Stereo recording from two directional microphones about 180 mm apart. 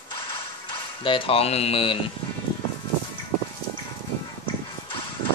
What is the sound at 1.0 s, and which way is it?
Speech, 30° left (ahead or behind).